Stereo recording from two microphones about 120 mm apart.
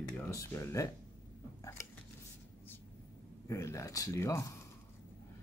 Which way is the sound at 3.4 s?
25° left (ahead or behind).